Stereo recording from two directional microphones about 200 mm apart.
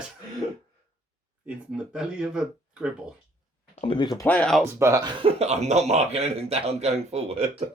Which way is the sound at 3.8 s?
25° left (ahead or behind).